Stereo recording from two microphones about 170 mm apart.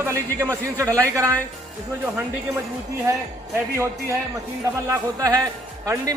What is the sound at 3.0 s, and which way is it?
A man's voice, 15° right (ahead or behind).